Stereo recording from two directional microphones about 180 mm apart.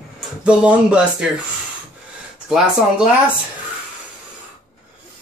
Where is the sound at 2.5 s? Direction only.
5° right (ahead or behind).